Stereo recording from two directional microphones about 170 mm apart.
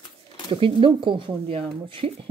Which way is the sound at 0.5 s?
30° right (ahead or behind).